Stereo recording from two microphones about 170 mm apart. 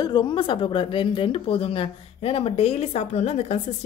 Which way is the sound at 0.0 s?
25° left (ahead or behind).